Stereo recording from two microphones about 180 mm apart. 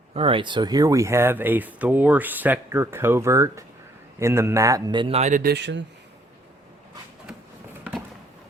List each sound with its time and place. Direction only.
0.1 s a man's voice: 30° right (ahead or behind)
5.4 s speech: 65° right (ahead or behind)